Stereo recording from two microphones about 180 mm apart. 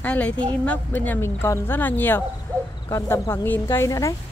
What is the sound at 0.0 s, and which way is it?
A woman's voice, 10° left (ahead or behind).